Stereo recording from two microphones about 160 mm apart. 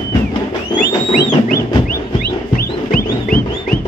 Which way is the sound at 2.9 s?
60° left (ahead or behind).